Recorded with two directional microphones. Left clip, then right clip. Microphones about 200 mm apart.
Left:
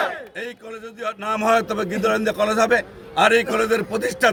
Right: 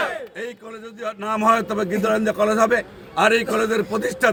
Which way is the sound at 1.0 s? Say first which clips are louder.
Right 1 dB; 20° left (ahead or behind).